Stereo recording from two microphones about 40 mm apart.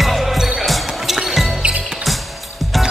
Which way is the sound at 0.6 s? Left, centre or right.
Centre.